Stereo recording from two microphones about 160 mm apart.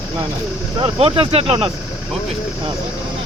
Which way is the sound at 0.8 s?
35° right (ahead or behind).